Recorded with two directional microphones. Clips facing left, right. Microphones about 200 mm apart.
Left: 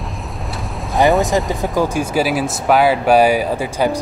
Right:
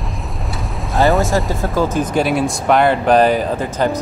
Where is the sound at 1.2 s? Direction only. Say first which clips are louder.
Left 1 dB; 15° left (ahead or behind).